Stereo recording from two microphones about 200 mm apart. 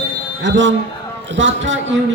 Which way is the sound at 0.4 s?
65° right (ahead or behind).